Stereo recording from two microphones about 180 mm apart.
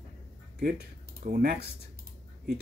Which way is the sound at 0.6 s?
60° right (ahead or behind).